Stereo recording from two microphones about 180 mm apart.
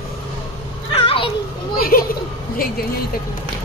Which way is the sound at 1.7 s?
55° left (ahead or behind).